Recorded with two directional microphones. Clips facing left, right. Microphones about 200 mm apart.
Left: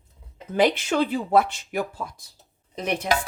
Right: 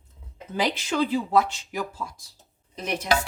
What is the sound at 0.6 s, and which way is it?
A woman's voice, 60° left (ahead or behind).